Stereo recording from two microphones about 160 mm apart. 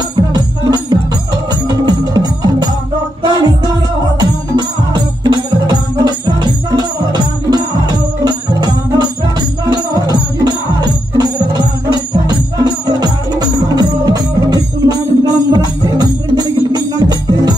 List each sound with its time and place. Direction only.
0.1 s music: 25° right (ahead or behind)